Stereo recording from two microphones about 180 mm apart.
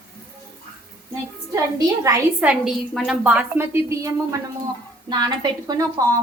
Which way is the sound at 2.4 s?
Centre (ahead or behind).